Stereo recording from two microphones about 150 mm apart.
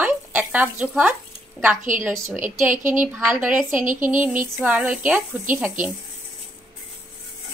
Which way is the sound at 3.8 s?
60° right (ahead or behind).